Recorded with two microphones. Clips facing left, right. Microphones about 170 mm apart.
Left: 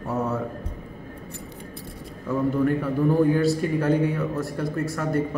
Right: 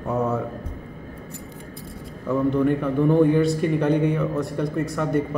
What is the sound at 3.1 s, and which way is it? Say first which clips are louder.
Speech: right 2 dB; 20° right (ahead or behind).